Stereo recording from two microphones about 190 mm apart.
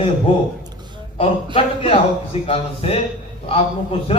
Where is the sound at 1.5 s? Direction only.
30° left (ahead or behind).